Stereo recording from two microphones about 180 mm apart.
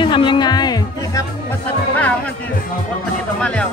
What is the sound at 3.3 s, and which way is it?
Speech, 5° left (ahead or behind).